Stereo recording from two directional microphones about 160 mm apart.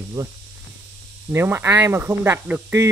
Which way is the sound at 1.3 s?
15° right (ahead or behind).